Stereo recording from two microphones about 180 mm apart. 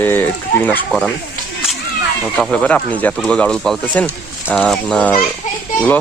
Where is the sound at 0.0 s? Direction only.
10° left (ahead or behind).